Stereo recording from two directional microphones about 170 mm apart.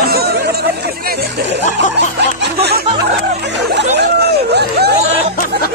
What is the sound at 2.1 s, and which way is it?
Snicker, 80° right.